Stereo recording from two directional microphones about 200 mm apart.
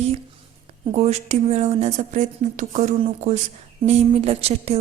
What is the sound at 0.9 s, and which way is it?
Speech, 35° right (ahead or behind).